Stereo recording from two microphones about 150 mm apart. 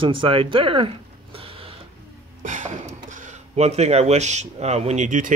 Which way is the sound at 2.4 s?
55° right (ahead or behind).